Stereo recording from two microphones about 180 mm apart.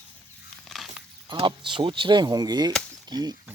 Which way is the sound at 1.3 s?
30° right (ahead or behind).